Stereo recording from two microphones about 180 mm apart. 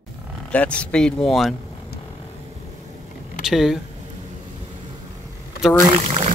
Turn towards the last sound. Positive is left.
turn(degrees=-35)  # may be behind; listen again after turning